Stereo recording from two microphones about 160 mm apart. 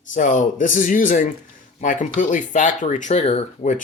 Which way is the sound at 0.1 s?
55° left (ahead or behind).